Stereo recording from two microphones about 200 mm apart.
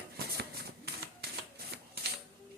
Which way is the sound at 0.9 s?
55° right (ahead or behind).